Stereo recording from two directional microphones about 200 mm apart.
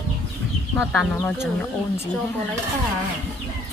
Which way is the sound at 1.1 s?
10° left (ahead or behind).